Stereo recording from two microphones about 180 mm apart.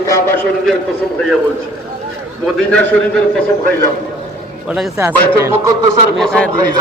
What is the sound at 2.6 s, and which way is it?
Speech, 5° left (ahead or behind).